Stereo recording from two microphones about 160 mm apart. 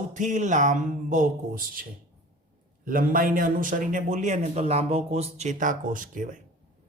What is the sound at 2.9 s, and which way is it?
A man's voice, 60° right (ahead or behind).